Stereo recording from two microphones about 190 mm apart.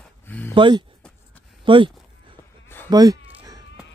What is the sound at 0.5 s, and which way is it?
Speech, 25° right (ahead or behind).